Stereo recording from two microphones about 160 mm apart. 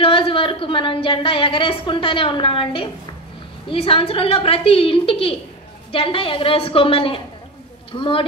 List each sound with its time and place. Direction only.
0.0 s a woman's voice: 35° left (ahead or behind)